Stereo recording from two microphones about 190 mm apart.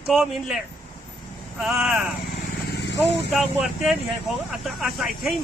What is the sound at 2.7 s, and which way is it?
Vehicle, 65° left (ahead or behind).